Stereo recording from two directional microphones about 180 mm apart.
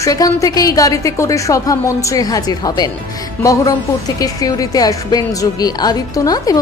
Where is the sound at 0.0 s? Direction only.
20° left (ahead or behind).